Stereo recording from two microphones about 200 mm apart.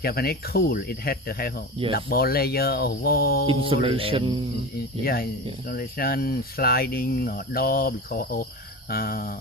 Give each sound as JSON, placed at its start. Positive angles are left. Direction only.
{"t": 0.0, "sound": "speech", "side_deg": 50}
{"t": 3.4, "sound": "music", "side_deg": -25}
{"t": 5.0, "sound": "speech", "side_deg": 50}